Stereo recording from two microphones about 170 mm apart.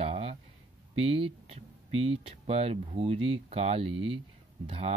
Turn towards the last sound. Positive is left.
turn(degrees=-35)  # may be behind; listen again after turning